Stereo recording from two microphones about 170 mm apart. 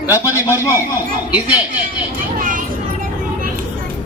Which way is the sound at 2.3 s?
50° right (ahead or behind).